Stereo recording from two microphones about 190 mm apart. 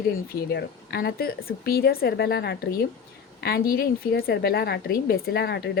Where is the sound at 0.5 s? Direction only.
55° left (ahead or behind).